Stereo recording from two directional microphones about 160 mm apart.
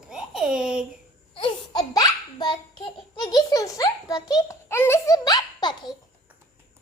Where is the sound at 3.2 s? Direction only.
25° left (ahead or behind).